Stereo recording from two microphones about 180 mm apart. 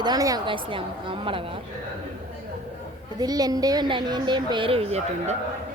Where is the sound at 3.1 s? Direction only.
20° right (ahead or behind).